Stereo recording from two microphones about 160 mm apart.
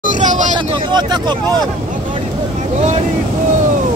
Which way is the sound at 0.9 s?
25° right (ahead or behind).